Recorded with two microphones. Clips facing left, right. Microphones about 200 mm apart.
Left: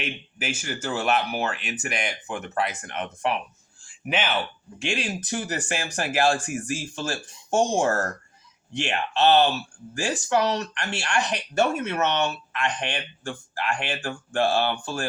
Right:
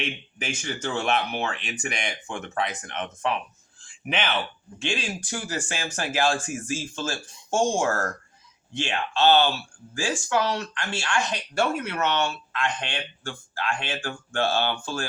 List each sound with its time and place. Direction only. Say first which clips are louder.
0.0 s speech: even; 5° left (ahead or behind)
3.8 s a sound: left 1 dB; 5° left (ahead or behind)
4.8 s speech: left 1 dB; 20° left (ahead or behind)